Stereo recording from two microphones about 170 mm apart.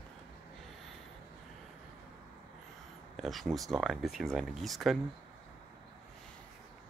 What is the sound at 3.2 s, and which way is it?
Speech, centre (ahead or behind).